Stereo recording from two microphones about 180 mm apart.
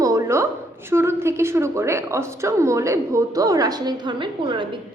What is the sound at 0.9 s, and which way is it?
A woman's voice, 15° right (ahead or behind).